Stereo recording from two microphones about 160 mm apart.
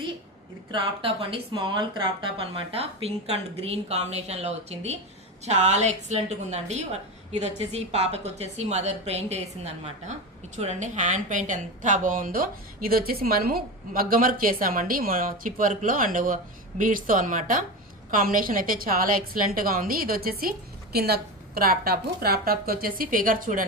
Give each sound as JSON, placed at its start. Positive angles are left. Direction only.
{"t": 0.7, "sound": "a woman's voice", "side_deg": -35}